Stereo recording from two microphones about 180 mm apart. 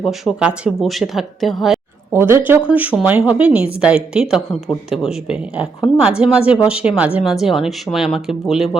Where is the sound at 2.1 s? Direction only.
15° right (ahead or behind).